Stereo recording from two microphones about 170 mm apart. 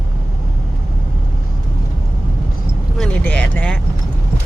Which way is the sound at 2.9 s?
5° left (ahead or behind).